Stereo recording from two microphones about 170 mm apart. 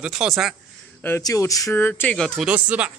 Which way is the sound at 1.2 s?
20° left (ahead or behind).